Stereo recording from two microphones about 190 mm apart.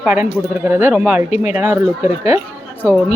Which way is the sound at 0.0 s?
5° right (ahead or behind).